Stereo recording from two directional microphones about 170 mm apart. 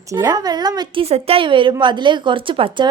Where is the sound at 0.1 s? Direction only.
20° right (ahead or behind).